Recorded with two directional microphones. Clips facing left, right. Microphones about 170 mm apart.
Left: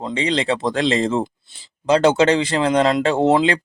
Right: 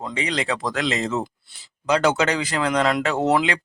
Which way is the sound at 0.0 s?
30° left (ahead or behind).